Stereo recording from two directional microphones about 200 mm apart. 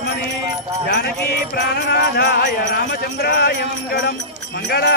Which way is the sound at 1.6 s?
55° left (ahead or behind).